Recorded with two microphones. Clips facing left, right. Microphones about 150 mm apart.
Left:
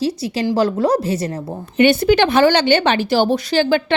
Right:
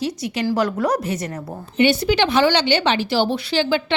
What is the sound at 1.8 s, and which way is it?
A woman's voice, 55° left (ahead or behind).